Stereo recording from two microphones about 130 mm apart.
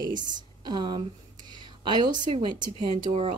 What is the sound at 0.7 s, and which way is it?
Speech, 35° right (ahead or behind).